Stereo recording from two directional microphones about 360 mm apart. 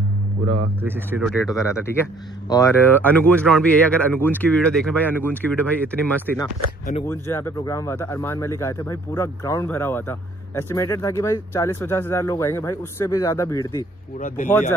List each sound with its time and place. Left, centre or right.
0.8 s speech: centre
1.6 s speech: centre
14.2 s speech: left